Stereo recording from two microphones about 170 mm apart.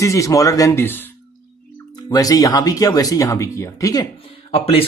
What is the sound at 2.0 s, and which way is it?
Speech, 20° left (ahead or behind).